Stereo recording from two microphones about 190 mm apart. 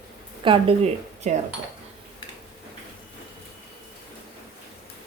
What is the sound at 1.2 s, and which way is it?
Speech, 40° right (ahead or behind).